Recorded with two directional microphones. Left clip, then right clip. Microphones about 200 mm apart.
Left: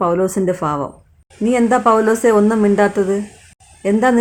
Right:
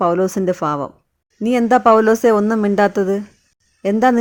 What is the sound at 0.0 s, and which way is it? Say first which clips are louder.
Speech: even; 35° right (ahead or behind).